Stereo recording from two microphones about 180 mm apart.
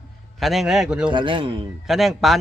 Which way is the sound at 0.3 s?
Centre (ahead or behind).